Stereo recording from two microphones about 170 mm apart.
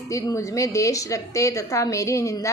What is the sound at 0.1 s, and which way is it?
A woman's voice, 20° left (ahead or behind).